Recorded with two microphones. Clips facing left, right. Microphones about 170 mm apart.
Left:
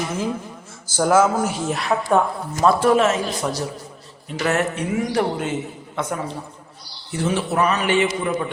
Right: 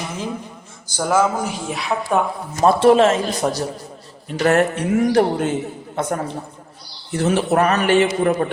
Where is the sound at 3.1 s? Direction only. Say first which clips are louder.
Right 3 dB; 50° right (ahead or behind).